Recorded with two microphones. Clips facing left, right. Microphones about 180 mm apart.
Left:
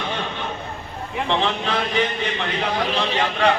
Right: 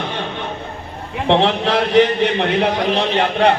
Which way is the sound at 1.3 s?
70° right (ahead or behind).